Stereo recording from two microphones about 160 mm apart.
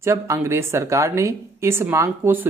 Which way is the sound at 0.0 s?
15° right (ahead or behind).